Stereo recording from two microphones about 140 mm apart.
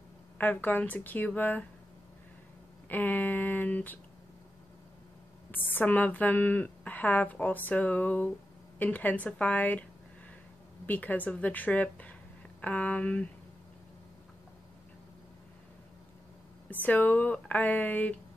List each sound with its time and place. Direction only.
0.4 s a woman's voice: 10° left (ahead or behind)
2.9 s a woman's voice: 10° left (ahead or behind)
5.5 s a woman's voice: 15° left (ahead or behind)
10.9 s a woman's voice: 10° left (ahead or behind)
16.8 s a woman's voice: 10° left (ahead or behind)